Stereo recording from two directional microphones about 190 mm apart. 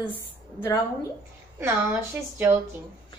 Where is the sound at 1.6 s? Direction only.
10° right (ahead or behind).